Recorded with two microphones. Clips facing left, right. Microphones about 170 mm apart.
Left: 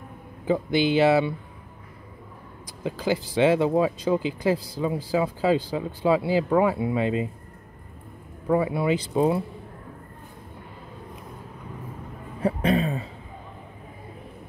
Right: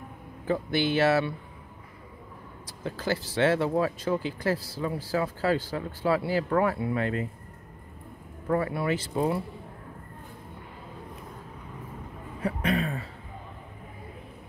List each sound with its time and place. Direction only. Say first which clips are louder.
0.5 s speech: left 4 dB; 15° left (ahead or behind)
2.6 s speech: left 5 dB; 15° left (ahead or behind)
8.5 s speech: left 4 dB; 15° left (ahead or behind)
12.4 s a sound: left 5 dB; 30° left (ahead or behind)